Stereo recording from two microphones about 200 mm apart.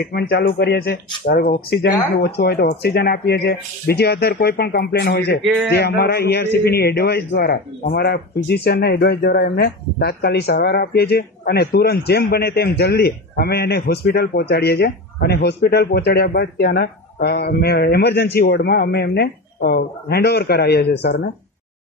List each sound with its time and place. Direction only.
0.1 s a man's voice: 50° left (ahead or behind)